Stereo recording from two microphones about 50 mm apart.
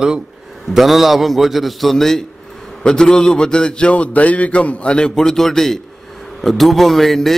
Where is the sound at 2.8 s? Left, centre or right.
Centre.